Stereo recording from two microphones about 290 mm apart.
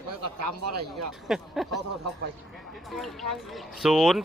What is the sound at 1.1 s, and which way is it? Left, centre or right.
Speech, centre.